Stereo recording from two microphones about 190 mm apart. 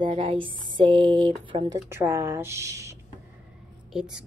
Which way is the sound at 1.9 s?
10° right (ahead or behind).